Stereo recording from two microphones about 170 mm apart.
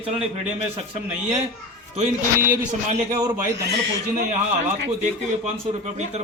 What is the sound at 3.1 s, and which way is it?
Speech, 25° right (ahead or behind).